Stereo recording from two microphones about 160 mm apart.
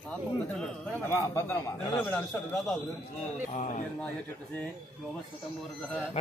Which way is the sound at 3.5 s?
45° left (ahead or behind).